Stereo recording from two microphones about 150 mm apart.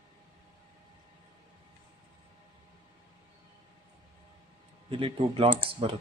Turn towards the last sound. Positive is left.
turn(degrees=-35)  # may be behind; listen again after turning